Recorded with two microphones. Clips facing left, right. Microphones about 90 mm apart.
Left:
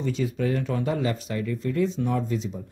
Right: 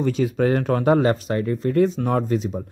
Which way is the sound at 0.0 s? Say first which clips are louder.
Right 6 dB; 90° right.